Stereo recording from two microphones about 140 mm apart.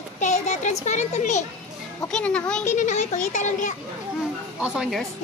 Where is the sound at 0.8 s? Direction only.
55° left (ahead or behind).